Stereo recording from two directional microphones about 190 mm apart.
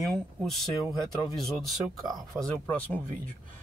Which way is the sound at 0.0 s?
Centre (ahead or behind).